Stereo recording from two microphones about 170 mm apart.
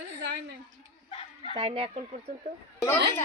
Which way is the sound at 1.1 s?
35° left (ahead or behind).